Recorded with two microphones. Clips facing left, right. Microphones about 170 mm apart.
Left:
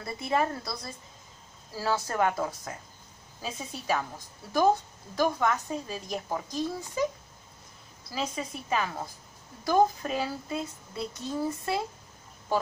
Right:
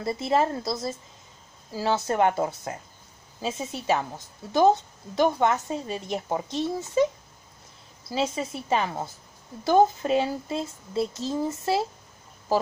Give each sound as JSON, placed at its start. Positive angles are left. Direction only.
{"t": 0.0, "sound": "a woman's voice", "side_deg": -25}
{"t": 8.1, "sound": "a woman's voice", "side_deg": -25}